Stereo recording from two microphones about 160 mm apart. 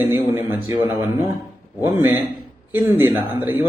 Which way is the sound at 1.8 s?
15° right (ahead or behind).